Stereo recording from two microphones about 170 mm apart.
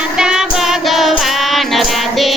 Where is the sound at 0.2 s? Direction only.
5° right (ahead or behind).